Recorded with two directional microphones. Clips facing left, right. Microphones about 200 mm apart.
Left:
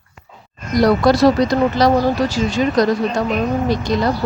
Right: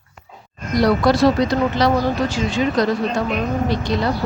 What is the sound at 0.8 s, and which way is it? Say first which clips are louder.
A woman's voice: left 2 dB; 40° left (ahead or behind).